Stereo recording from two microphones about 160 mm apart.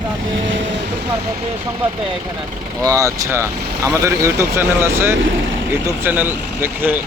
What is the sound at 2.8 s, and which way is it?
Speech, 20° right (ahead or behind).